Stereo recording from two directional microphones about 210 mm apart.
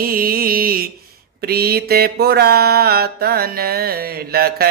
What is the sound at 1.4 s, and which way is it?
Mantra, 45° right (ahead or behind).